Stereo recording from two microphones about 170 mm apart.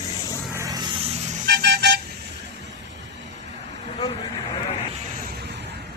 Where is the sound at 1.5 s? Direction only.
80° right.